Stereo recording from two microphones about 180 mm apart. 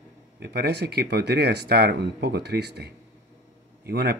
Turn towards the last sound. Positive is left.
turn(degrees=-60)  # may be behind; listen again after turning